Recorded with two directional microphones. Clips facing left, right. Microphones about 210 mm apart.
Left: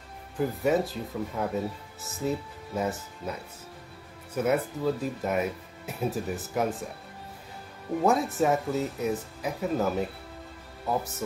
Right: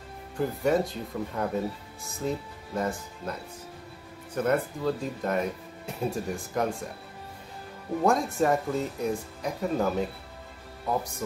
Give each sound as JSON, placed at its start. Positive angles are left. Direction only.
{"t": 0.4, "sound": "speech", "side_deg": 5}
{"t": 8.0, "sound": "speech", "side_deg": 5}